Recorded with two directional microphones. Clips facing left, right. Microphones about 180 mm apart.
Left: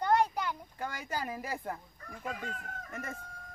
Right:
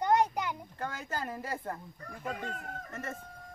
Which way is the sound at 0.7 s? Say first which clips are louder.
Even; 10° left (ahead or behind).